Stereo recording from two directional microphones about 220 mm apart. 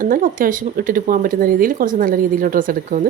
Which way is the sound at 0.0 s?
40° right (ahead or behind).